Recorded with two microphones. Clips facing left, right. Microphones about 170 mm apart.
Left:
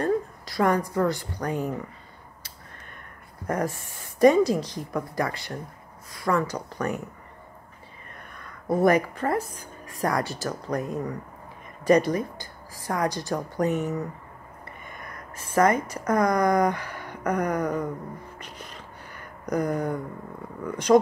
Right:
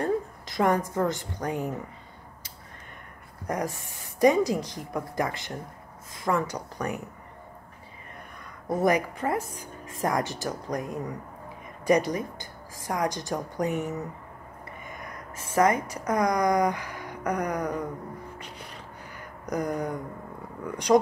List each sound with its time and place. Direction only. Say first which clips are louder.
0.0 s a woman's voice: left 2 dB; 20° right (ahead or behind)
3.4 s speech: left 3 dB; 15° right (ahead or behind)
8.6 s a woman's voice: left 3 dB; 15° right (ahead or behind)
19.1 s a sound: left 3 dB; 10° right (ahead or behind)
20.6 s speech: left 2 dB; 15° right (ahead or behind)